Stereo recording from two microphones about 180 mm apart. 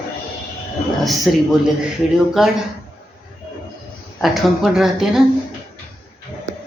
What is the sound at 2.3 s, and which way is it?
Speech, centre (ahead or behind).